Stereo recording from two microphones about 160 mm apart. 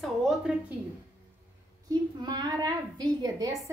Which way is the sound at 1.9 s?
25° right (ahead or behind).